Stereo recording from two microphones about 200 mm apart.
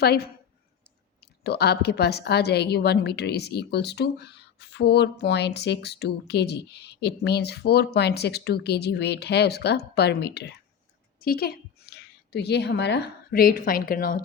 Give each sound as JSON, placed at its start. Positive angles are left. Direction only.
{"t": 0.0, "sound": "a woman's voice", "side_deg": 50}